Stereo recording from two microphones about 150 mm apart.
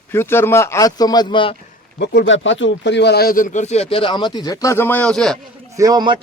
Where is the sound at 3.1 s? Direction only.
85° left; by 5.4 s 5° left (ahead or behind).